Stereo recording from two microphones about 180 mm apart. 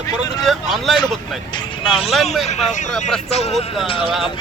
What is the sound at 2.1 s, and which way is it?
Speech, centre (ahead or behind).